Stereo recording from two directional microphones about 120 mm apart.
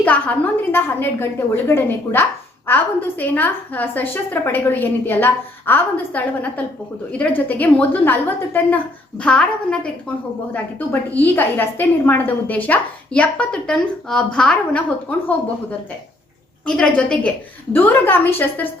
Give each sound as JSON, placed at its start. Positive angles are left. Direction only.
{"t": 0.0, "sound": "a woman's voice", "side_deg": 15}
{"t": 16.6, "sound": "a woman's voice", "side_deg": 5}